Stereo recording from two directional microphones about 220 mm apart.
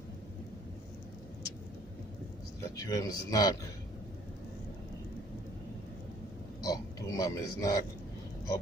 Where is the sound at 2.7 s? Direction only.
15° left (ahead or behind).